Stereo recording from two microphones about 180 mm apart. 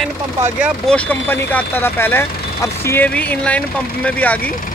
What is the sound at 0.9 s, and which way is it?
Speech, 10° left (ahead or behind).